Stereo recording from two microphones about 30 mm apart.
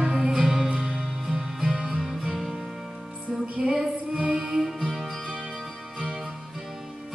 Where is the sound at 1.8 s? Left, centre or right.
Centre.